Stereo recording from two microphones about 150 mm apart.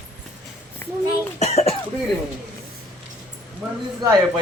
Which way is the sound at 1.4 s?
45° left (ahead or behind).